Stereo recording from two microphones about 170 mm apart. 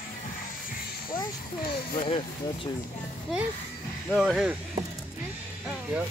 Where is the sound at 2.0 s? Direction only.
30° left (ahead or behind).